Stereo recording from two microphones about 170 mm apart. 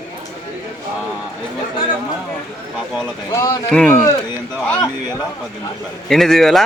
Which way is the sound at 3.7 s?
5° left (ahead or behind).